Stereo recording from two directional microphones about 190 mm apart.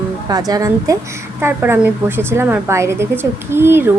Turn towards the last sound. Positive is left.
turn(degrees=-10)  # may be behind; listen again after turning